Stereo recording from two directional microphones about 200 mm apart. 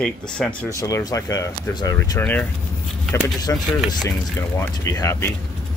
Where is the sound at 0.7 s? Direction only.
15° left (ahead or behind).